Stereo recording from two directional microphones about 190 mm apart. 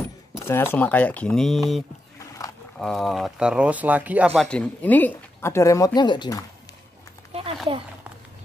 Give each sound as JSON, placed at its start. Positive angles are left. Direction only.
{"t": 0.4, "sound": "speech", "side_deg": 10}
{"t": 2.1, "sound": "roaring cats", "side_deg": 15}
{"t": 2.8, "sound": "speech", "side_deg": 0}
{"t": 4.4, "sound": "speech", "side_deg": 5}
{"t": 7.3, "sound": "a sound", "side_deg": -35}